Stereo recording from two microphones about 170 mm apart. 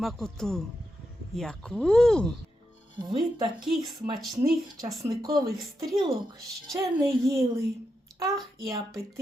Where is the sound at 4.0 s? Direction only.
20° right (ahead or behind).